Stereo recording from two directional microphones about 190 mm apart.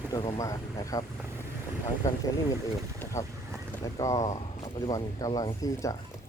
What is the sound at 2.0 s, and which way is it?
Speech, 15° left (ahead or behind).